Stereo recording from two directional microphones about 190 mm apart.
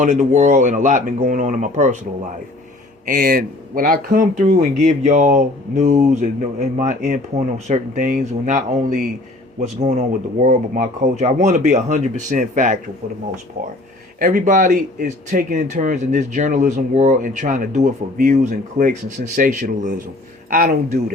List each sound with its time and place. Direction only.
0.0 s speech: 40° right (ahead or behind)
3.1 s speech: 50° right (ahead or behind)
14.2 s speech: 45° right (ahead or behind)